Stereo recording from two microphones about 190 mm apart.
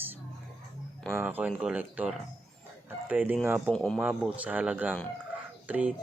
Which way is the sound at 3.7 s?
5° left (ahead or behind).